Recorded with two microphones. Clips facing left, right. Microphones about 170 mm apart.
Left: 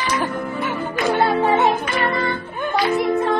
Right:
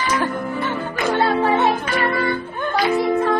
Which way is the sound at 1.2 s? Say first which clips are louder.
Even; 15° left (ahead or behind).